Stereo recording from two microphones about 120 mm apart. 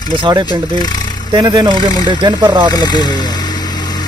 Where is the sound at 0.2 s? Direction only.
40° right (ahead or behind).